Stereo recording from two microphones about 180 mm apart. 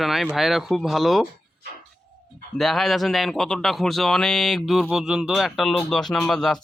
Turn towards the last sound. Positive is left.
turn(degrees=5)  # may be behind; listen again after turning